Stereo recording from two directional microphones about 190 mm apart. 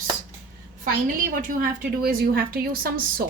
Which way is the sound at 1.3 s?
45° right (ahead or behind).